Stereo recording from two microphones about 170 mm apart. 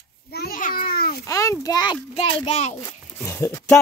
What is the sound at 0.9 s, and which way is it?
Babbling, 60° left (ahead or behind).